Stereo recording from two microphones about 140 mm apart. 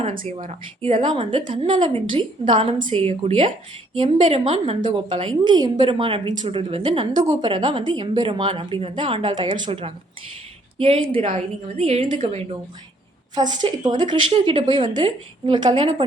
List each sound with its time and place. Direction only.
1.1 s a woman's voice: 35° right (ahead or behind)
4.9 s a woman's voice: 35° right (ahead or behind)
13.3 s speech: 30° right (ahead or behind)